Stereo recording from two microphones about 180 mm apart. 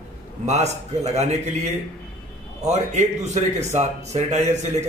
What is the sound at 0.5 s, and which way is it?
Speech, 35° right (ahead or behind).